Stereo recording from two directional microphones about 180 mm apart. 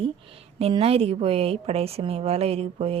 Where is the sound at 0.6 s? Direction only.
35° right (ahead or behind).